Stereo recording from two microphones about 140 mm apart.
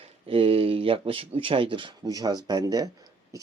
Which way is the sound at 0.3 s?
40° right (ahead or behind).